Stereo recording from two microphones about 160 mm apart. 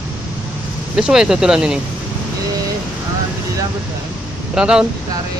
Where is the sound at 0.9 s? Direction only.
5° right (ahead or behind).